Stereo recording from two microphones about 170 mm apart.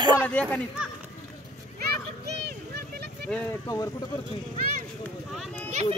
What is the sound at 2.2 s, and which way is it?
Vehicle, 75° right (ahead or behind).